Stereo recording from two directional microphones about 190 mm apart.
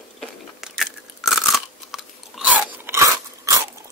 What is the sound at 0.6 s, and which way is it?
Crunch, centre (ahead or behind).